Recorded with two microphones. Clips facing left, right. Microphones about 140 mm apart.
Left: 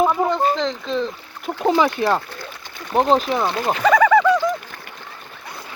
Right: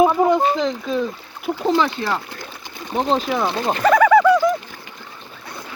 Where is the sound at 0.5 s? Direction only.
5° right (ahead or behind).